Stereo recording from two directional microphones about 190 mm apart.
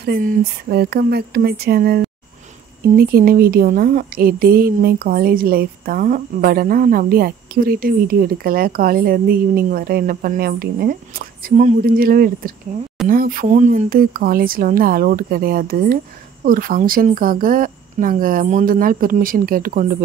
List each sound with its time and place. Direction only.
0.0 s speech: 55° right (ahead or behind)